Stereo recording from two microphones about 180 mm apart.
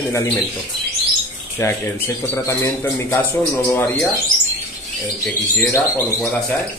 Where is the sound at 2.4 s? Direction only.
15° left (ahead or behind).